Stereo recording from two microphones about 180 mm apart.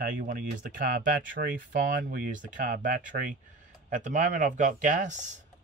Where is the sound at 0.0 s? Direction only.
50° right (ahead or behind).